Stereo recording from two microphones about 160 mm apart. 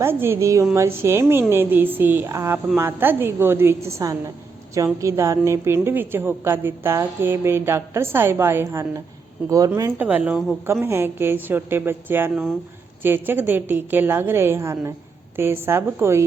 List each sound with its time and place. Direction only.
0.0 s a woman's voice: 15° right (ahead or behind)
10.0 s a woman's voice: 10° right (ahead or behind)